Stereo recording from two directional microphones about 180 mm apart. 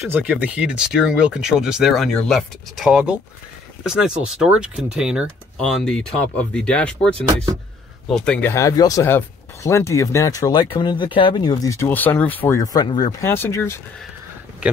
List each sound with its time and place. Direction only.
0.1 s speech: 10° right (ahead or behind); by 13.7 s 15° left (ahead or behind)